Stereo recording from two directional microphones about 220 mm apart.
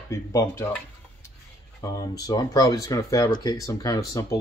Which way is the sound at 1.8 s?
15° left (ahead or behind).